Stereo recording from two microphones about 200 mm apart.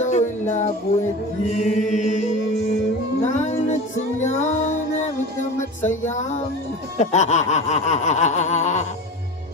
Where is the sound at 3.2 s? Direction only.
35° left (ahead or behind).